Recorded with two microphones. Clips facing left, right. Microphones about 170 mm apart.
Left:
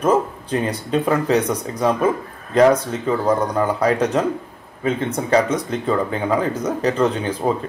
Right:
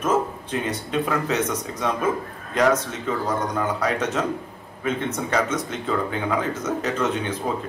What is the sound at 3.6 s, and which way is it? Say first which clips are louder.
Speech: left 6 dB; 35° left (ahead or behind).